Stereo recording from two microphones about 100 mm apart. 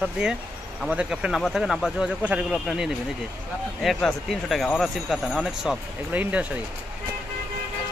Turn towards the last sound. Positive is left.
turn(degrees=-15)  # may be behind; listen again after turning